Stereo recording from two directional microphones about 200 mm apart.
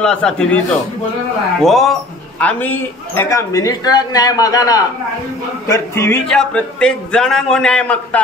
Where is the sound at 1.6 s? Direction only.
Centre (ahead or behind).